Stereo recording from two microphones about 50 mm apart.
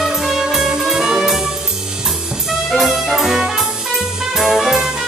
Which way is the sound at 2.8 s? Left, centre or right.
Centre.